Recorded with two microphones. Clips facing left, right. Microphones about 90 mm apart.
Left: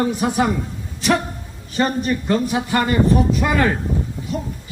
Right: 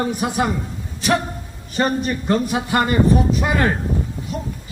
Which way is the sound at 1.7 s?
20° right (ahead or behind).